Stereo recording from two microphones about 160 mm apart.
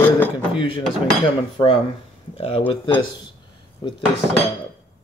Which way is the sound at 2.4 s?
35° left (ahead or behind).